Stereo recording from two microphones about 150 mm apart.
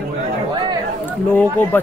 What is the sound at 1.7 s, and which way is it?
Speech, 15° left (ahead or behind).